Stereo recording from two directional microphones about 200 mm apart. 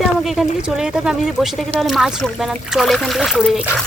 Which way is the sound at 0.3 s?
Centre (ahead or behind).